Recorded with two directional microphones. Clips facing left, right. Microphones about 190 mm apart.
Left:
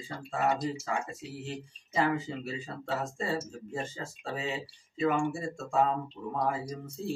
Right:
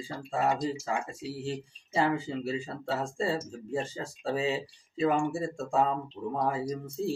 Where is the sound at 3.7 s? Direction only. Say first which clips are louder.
Right 5 dB; 35° right (ahead or behind).